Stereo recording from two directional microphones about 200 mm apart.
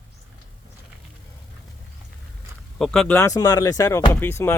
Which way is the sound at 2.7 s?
5° left (ahead or behind).